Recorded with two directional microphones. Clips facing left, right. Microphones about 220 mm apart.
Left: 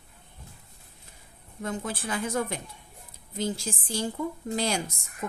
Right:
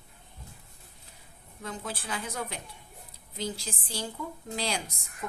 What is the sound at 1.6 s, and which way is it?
A woman's voice, 50° left (ahead or behind).